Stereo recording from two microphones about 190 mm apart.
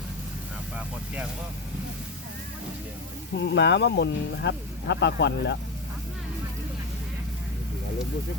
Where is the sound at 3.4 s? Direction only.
65° left (ahead or behind).